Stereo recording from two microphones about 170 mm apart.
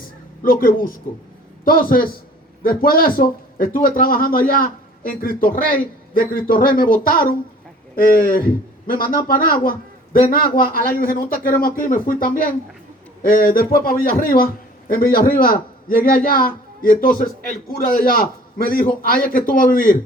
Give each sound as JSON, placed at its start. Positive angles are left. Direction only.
{"t": 0.4, "sound": "a man's voice", "side_deg": 55}